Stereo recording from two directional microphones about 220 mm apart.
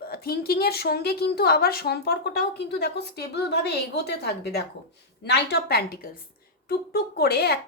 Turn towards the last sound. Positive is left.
turn(degrees=45)  # may be behind; listen again after turning